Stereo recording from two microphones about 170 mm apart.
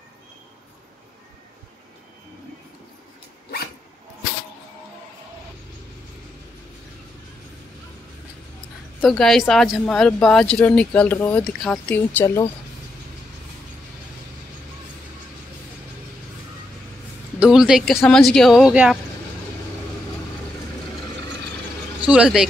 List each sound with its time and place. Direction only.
9.0 s a woman's voice: centre (ahead or behind)
17.4 s a woman's voice: 5° right (ahead or behind)
22.0 s a woman's voice: 5° right (ahead or behind)